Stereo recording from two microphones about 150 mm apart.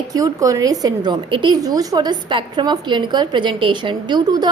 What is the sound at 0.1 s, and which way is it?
A woman's voice, 20° right (ahead or behind).